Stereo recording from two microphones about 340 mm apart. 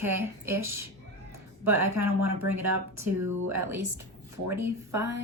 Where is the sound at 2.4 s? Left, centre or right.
Right.